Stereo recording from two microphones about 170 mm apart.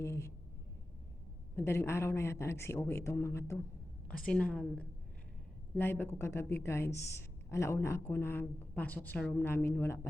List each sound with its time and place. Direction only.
0.0 s a sound: 15° left (ahead or behind)
1.5 s speech: 15° left (ahead or behind)
4.3 s speech: 5° left (ahead or behind)